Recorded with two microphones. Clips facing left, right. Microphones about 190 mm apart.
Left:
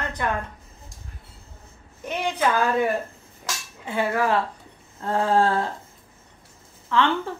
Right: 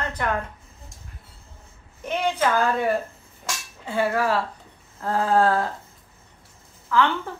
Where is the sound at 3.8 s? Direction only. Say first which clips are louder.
Even; 20° left (ahead or behind).